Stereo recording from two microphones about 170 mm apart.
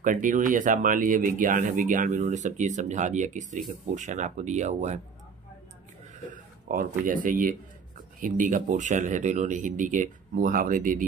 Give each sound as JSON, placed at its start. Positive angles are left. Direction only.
{"t": 0.0, "sound": "speech", "side_deg": -50}
{"t": 6.3, "sound": "speech", "side_deg": -55}